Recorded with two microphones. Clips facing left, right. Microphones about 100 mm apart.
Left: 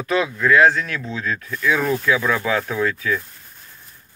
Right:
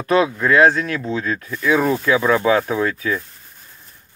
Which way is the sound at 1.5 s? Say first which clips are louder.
Right 3 dB; 20° right (ahead or behind).